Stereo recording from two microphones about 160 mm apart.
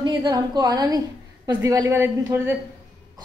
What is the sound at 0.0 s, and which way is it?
A woman's voice, 25° right (ahead or behind).